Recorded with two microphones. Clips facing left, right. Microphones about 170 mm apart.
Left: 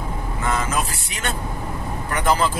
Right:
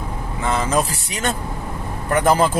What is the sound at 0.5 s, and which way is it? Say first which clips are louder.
Speech: right 4 dB; 35° right (ahead or behind).